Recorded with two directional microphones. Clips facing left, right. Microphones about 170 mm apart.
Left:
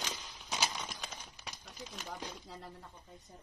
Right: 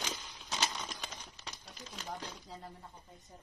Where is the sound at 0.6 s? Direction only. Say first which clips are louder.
Even; 5° left (ahead or behind).